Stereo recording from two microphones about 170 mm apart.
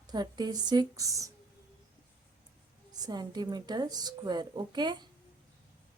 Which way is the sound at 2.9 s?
25° right (ahead or behind).